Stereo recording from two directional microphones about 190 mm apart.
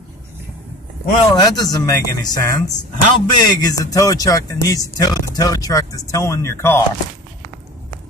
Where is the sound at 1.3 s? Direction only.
20° left (ahead or behind).